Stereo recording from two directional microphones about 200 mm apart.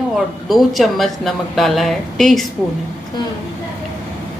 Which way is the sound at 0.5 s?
Centre (ahead or behind).